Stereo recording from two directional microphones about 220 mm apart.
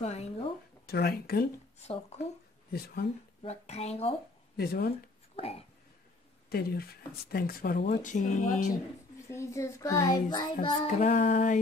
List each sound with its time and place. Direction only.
0.0 s a sound: 30° left (ahead or behind)
0.8 s speech: 45° left (ahead or behind)
1.8 s speech: 30° left (ahead or behind)
2.7 s speech: 45° left (ahead or behind)
3.4 s speech: 30° left (ahead or behind)
4.6 s speech: 45° left (ahead or behind)
5.3 s speech: 25° left (ahead or behind)
6.5 s speech: 45° left (ahead or behind)
9.3 s a child's voice: 15° left (ahead or behind)
11.1 s speech: 35° left (ahead or behind)